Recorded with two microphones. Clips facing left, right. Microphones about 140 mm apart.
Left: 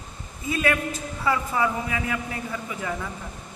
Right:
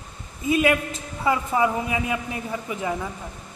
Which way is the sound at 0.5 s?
20° right (ahead or behind).